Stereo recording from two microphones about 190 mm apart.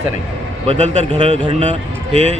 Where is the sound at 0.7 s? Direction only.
35° right (ahead or behind).